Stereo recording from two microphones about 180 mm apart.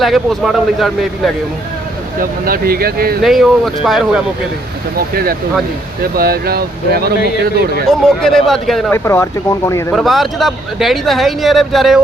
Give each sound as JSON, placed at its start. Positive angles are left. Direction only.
{"t": 0.0, "sound": "speech", "side_deg": 0}
{"t": 2.4, "sound": "speech", "side_deg": -55}
{"t": 3.2, "sound": "speech", "side_deg": 0}
{"t": 4.9, "sound": "speech", "side_deg": -55}
{"t": 8.0, "sound": "speech", "side_deg": 0}
{"t": 8.9, "sound": "speech", "side_deg": 15}
{"t": 9.9, "sound": "speech", "side_deg": 0}